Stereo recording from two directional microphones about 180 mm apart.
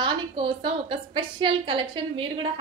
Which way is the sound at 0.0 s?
30° right (ahead or behind).